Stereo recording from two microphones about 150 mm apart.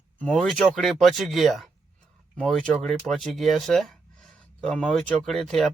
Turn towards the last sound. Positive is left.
turn(degrees=0)  # may be behind; listen again after turning